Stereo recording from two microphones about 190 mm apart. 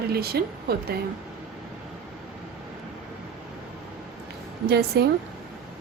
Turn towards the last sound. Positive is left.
turn(degrees=-55)  # may be behind; listen again after turning